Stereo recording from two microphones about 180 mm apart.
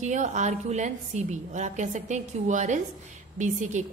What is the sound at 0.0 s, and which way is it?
A woman's voice, 40° right (ahead or behind).